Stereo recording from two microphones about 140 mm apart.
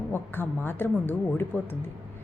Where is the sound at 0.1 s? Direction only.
15° left (ahead or behind).